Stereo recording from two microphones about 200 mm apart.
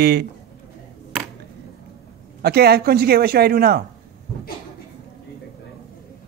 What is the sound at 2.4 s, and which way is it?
Speech, 50° right (ahead or behind).